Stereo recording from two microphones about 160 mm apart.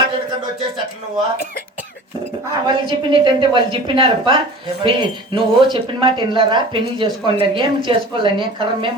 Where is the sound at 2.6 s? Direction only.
30° right (ahead or behind).